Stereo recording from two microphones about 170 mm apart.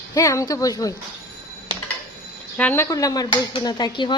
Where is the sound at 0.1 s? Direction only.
20° left (ahead or behind).